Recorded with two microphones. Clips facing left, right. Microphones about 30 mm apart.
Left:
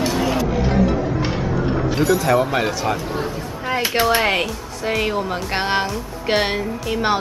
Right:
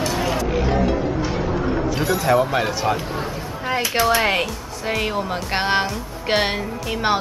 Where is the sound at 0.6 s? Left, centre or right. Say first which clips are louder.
Even; right.